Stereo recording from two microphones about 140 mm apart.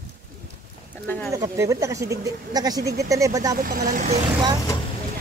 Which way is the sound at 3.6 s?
90° right.